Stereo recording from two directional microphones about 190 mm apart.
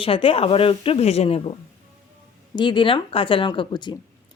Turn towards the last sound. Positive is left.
turn(degrees=25)  # may be behind; listen again after turning